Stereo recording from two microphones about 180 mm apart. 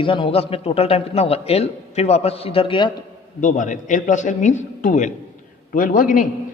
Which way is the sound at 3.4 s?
45° left (ahead or behind).